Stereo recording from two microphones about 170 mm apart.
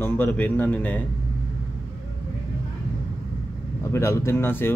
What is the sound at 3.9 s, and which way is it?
Speech, 15° left (ahead or behind).